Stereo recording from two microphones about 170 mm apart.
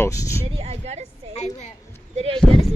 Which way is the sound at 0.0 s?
20° left (ahead or behind).